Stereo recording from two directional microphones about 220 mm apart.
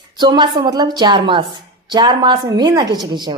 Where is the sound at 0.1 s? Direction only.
20° right (ahead or behind).